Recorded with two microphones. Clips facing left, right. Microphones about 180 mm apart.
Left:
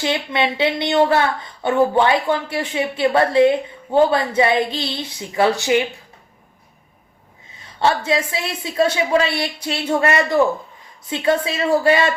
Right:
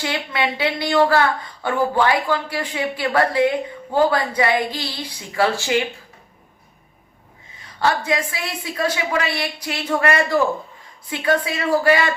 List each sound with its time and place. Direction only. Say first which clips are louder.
0.0 s speech: left 3 dB; 25° left (ahead or behind)
7.8 s speech: left 2 dB; 25° left (ahead or behind)